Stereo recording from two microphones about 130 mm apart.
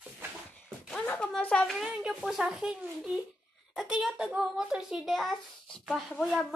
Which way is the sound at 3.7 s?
Centre (ahead or behind).